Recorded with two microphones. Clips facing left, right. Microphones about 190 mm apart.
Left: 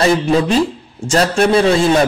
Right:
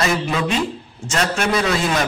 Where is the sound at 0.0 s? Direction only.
30° left (ahead or behind).